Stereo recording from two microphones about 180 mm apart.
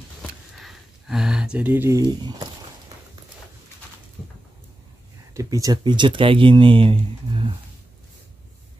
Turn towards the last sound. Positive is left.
turn(degrees=-30)  # may be behind; listen again after turning